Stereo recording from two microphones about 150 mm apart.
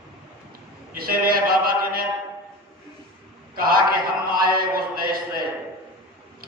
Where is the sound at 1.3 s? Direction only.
75° right (ahead or behind).